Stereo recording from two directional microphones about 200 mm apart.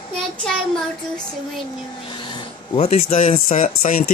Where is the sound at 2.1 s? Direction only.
20° left (ahead or behind).